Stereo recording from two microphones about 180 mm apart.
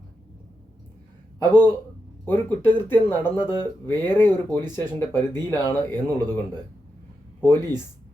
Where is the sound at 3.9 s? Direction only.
10° left (ahead or behind).